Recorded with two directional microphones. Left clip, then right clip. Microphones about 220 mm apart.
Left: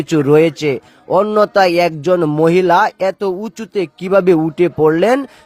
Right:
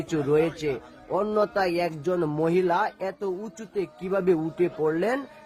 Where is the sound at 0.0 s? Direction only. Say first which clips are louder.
Left 12 dB; 40° left (ahead or behind).